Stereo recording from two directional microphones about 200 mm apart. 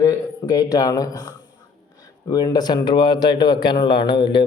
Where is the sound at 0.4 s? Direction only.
20° left (ahead or behind).